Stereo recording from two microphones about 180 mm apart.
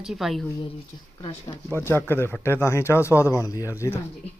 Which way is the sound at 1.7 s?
15° left (ahead or behind).